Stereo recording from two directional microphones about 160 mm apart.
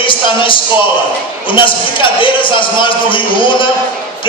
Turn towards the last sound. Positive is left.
turn(degrees=30)  # may be behind; listen again after turning